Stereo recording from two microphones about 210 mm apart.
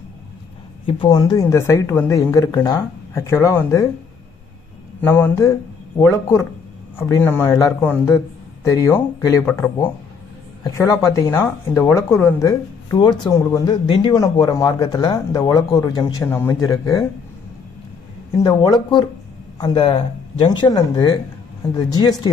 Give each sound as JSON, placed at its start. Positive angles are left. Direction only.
{"t": 0.8, "sound": "speech", "side_deg": 20}
{"t": 5.0, "sound": "a man's voice", "side_deg": 10}
{"t": 18.4, "sound": "speech", "side_deg": 20}